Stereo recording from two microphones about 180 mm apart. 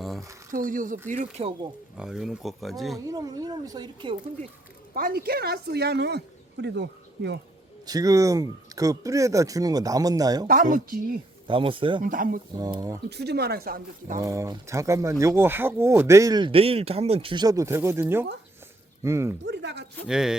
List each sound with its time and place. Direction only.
0.5 s speech: 50° right (ahead or behind)
2.0 s speech: 5° right (ahead or behind)
3.1 s speech: 20° right (ahead or behind)
4.9 s speech: 55° right (ahead or behind); by 7.3 s 70° right (ahead or behind)
7.9 s speech: 20° right (ahead or behind)
10.4 s speech: 50° right (ahead or behind)
11.4 s speech: 30° right (ahead or behind)
12.0 s speech: 50° right (ahead or behind)
12.5 s speech: 20° right (ahead or behind)
13.1 s speech: 65° right (ahead or behind)
14.2 s speech: 15° right (ahead or behind)
19.5 s speech: 70° right (ahead or behind)
20.1 s speech: 5° right (ahead or behind)